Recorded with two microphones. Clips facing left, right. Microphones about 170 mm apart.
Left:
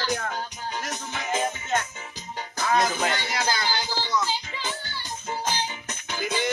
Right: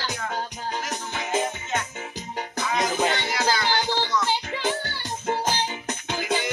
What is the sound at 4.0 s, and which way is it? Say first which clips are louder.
Music: right 2 dB; 65° right (ahead or behind).